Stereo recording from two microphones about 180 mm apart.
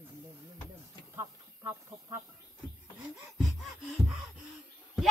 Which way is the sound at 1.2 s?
15° right (ahead or behind).